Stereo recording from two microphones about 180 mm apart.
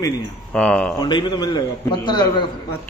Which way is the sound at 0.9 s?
25° left (ahead or behind).